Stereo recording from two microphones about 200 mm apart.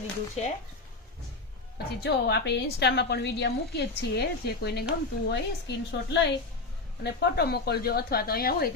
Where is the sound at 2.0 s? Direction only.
55° left (ahead or behind).